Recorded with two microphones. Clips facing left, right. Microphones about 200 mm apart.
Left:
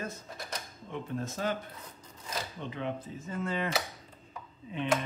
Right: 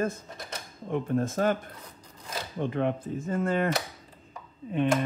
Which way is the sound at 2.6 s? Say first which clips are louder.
Right 12 dB; 55° right (ahead or behind).